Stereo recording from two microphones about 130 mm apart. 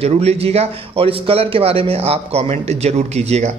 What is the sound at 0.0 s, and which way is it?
Speech, 50° right (ahead or behind).